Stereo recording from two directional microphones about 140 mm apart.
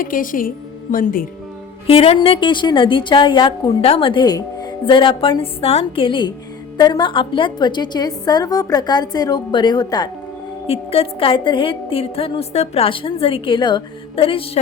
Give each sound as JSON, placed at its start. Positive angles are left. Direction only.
{"t": 0.0, "sound": "a woman's voice", "side_deg": 75}
{"t": 1.9, "sound": "a woman's voice", "side_deg": 40}
{"t": 10.7, "sound": "a woman's voice", "side_deg": 45}